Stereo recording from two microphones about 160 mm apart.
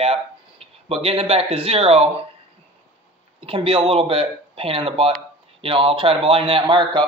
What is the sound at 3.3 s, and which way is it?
A man's voice, 35° right (ahead or behind).